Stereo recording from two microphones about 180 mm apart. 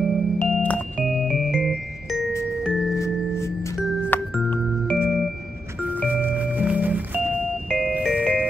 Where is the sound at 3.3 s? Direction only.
15° left (ahead or behind); by 5.0 s centre (ahead or behind).